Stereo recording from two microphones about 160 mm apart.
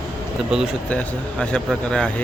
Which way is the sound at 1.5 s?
5° left (ahead or behind).